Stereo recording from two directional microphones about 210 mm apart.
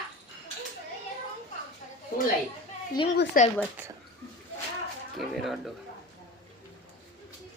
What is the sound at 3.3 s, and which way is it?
Speech, 40° left (ahead or behind).